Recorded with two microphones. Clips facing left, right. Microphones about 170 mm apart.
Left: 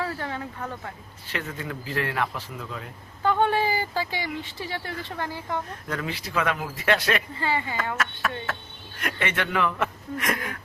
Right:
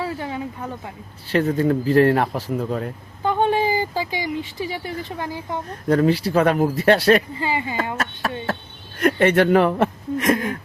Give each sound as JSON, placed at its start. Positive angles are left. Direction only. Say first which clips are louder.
{"t": 0.0, "sound": "speech", "louder": "right 4 dB", "side_deg": -15}
{"t": 1.3, "sound": "speech", "louder": "right 14 dB", "side_deg": -35}
{"t": 3.2, "sound": "speech", "louder": "right 3 dB", "side_deg": -15}
{"t": 5.9, "sound": "speech", "louder": "right 13 dB", "side_deg": -35}
{"t": 7.3, "sound": "speech", "louder": "right 3 dB", "side_deg": -15}
{"t": 7.8, "sound": "speech", "louder": "right 4 dB", "side_deg": -30}